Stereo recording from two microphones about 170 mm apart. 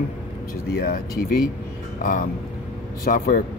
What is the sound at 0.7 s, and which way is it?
Speech, 65° left (ahead or behind).